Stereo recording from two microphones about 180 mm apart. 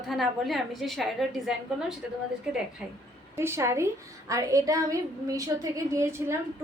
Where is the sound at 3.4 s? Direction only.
15° right (ahead or behind).